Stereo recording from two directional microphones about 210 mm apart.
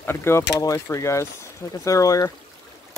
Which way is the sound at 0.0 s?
10° left (ahead or behind).